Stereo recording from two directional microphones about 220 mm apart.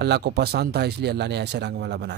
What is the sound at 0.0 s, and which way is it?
Speech, 50° right (ahead or behind).